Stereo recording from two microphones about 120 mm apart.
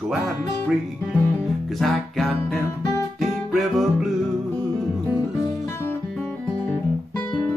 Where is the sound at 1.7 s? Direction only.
Centre (ahead or behind).